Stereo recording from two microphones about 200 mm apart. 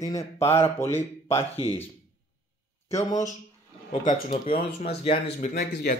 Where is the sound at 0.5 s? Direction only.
30° left (ahead or behind).